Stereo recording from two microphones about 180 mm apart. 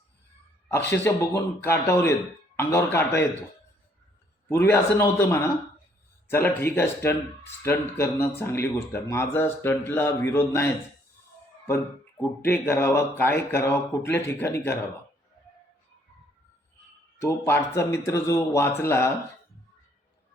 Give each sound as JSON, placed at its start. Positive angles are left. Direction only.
{"t": 0.9, "sound": "speech", "side_deg": 15}
{"t": 4.4, "sound": "speech", "side_deg": 10}
{"t": 11.7, "sound": "speech", "side_deg": 15}
{"t": 17.2, "sound": "speech", "side_deg": 15}